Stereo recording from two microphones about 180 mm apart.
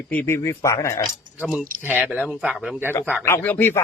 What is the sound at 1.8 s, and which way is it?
Speech, 10° right (ahead or behind).